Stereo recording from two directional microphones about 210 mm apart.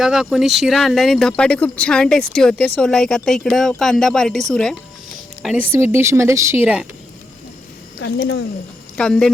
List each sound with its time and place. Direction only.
0.0 s speech: centre (ahead or behind)
5.7 s speech: 10° right (ahead or behind)
7.9 s speech: 55° left (ahead or behind)
9.0 s speech: 5° left (ahead or behind)